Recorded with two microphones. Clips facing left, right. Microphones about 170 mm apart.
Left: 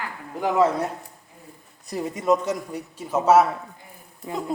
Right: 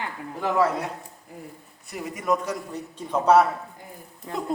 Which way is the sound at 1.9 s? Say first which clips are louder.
Left 4 dB; 25° left (ahead or behind).